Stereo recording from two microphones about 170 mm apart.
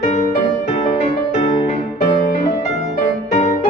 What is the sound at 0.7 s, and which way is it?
Music, 40° left (ahead or behind).